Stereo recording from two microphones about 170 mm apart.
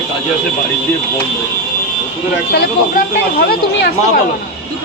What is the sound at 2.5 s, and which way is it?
Speech, 65° left (ahead or behind).